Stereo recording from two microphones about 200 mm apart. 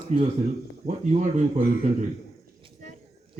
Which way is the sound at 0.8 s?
40° right (ahead or behind).